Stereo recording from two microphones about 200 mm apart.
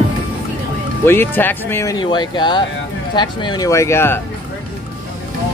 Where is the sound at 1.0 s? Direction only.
10° left (ahead or behind).